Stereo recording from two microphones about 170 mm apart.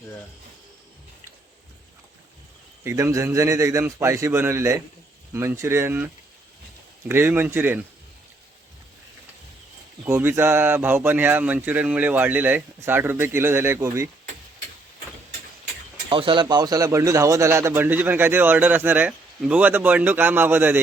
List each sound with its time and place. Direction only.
2.8 s speech: 20° right (ahead or behind)
7.1 s speech: 15° right (ahead or behind)
10.0 s speech: 15° right (ahead or behind)
16.0 s speech: 30° right (ahead or behind); by 20.7 s 10° right (ahead or behind)